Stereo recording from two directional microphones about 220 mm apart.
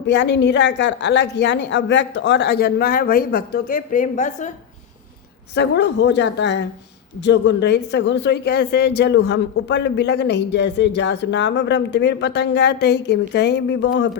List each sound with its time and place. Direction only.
0.1 s a woman's voice: 50° left (ahead or behind); by 4.5 s 35° left (ahead or behind)
5.5 s a woman's voice: 50° left (ahead or behind)